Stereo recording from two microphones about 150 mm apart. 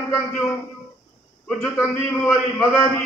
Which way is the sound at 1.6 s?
15° left (ahead or behind).